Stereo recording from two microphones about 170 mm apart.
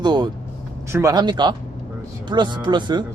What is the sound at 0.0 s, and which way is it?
Speech, 25° right (ahead or behind).